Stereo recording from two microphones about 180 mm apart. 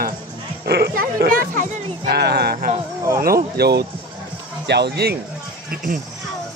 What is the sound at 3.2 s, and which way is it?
Speech, 60° right (ahead or behind).